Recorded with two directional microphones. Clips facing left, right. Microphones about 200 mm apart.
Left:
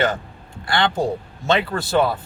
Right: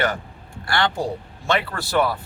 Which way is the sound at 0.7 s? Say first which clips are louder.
Left 3 dB; 20° left (ahead or behind).